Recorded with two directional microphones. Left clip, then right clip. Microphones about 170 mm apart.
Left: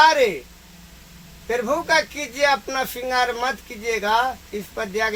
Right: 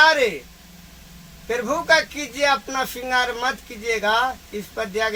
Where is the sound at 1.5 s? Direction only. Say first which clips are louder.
Right 2 dB; 20° left (ahead or behind).